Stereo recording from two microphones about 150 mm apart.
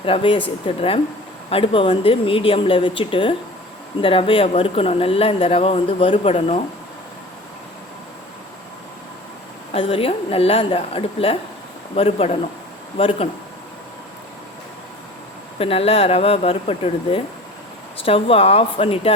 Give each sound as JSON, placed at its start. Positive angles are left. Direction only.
{"t": 0.0, "sound": "speech", "side_deg": 35}
{"t": 9.7, "sound": "speech", "side_deg": 40}
{"t": 15.5, "sound": "speech", "side_deg": 40}